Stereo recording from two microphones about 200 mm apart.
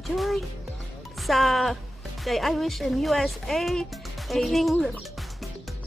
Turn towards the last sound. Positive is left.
turn(degrees=0)  # may be behind; listen again after turning